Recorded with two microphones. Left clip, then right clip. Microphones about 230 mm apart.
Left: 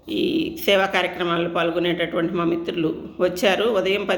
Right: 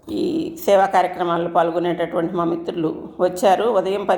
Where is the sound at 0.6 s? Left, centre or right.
Left.